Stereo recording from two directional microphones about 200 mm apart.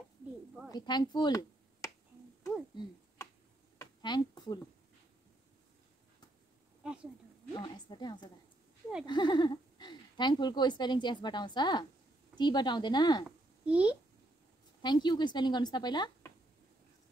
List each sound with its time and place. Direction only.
0.7 s speech: 20° left (ahead or behind)
3.7 s a sound: 20° left (ahead or behind)
6.8 s speech: 5° right (ahead or behind)
7.5 s speech: 20° left (ahead or behind)
13.7 s a child's voice: 5° right (ahead or behind)
14.8 s speech: 20° left (ahead or behind)